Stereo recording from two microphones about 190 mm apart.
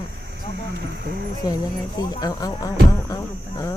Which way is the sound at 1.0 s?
55° right (ahead or behind).